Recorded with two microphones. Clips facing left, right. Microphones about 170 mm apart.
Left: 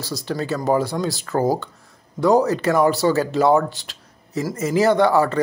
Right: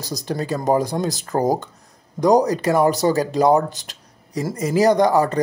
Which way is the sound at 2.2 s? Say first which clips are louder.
Right 1 dB; 15° right (ahead or behind).